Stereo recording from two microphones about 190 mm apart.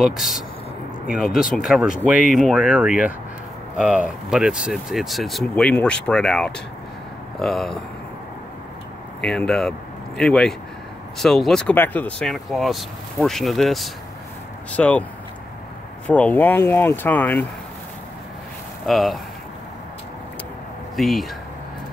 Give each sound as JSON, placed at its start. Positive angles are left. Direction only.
{"t": 0.0, "sound": "speech", "side_deg": 0}
{"t": 9.2, "sound": "speech", "side_deg": 5}
{"t": 16.1, "sound": "speech", "side_deg": 10}
{"t": 18.9, "sound": "speech", "side_deg": 0}
{"t": 20.9, "sound": "speech", "side_deg": 0}